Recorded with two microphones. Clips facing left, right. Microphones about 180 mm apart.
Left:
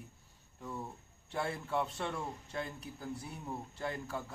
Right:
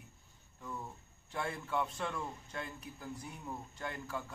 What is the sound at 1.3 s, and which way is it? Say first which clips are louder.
A man's voice: left 2 dB; 30° left (ahead or behind).